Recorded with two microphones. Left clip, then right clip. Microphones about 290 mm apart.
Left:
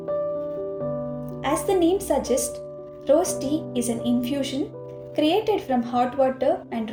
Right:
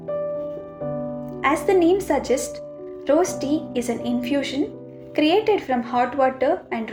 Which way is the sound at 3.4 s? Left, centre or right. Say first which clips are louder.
Right 2 dB; right.